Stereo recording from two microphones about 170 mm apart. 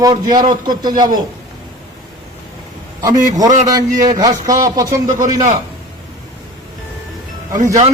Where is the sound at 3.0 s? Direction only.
20° right (ahead or behind).